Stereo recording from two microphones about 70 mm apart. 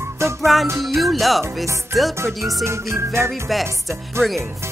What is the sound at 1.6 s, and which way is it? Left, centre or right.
Speech, right.